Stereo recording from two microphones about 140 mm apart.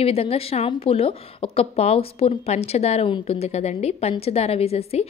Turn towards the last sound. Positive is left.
turn(degrees=45)  # may be behind; listen again after turning